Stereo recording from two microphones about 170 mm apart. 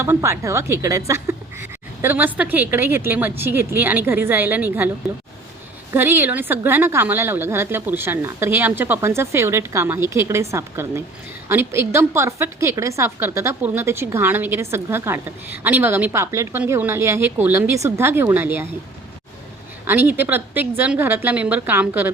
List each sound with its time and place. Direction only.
0.0 s a woman's voice: 15° right (ahead or behind)
5.9 s a woman's voice: 10° right (ahead or behind)
19.9 s a woman's voice: 10° right (ahead or behind)